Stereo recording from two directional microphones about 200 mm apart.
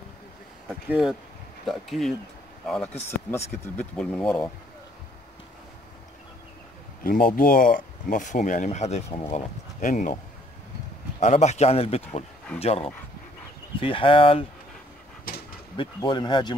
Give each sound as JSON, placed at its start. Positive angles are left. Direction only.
{"t": 0.8, "sound": "speech", "side_deg": -5}
{"t": 3.6, "sound": "speech", "side_deg": 5}
{"t": 7.0, "sound": "speech", "side_deg": 45}
{"t": 11.1, "sound": "speech", "side_deg": 35}
{"t": 15.3, "sound": "dog", "side_deg": 45}
{"t": 15.7, "sound": "speech", "side_deg": 25}